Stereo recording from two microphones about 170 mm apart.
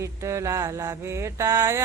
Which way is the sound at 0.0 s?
15° right (ahead or behind).